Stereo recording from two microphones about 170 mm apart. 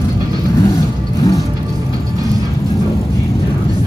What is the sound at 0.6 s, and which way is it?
Vehicle, 20° left (ahead or behind).